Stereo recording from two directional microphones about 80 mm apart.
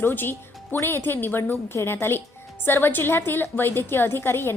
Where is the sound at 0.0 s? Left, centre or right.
Left.